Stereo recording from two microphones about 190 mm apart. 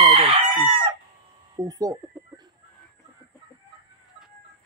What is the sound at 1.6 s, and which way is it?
Speech, 20° right (ahead or behind).